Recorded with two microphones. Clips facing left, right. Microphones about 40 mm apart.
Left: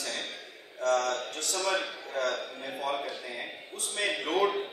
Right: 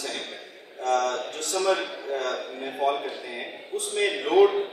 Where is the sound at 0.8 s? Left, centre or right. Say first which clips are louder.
Right 3 dB; right.